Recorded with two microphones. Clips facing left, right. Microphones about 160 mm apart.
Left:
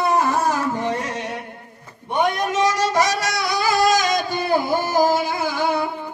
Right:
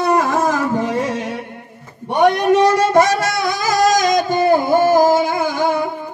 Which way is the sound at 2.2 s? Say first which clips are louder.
Right 8 dB; 65° right (ahead or behind).